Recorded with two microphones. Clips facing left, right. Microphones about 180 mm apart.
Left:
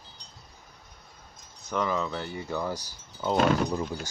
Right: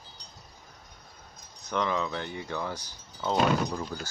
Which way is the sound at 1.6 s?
5° left (ahead or behind).